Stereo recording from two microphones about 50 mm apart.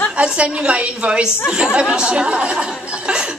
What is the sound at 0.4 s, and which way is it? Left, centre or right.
Speech, centre.